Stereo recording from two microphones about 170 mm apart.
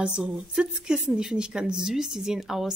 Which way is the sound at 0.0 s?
5° right (ahead or behind).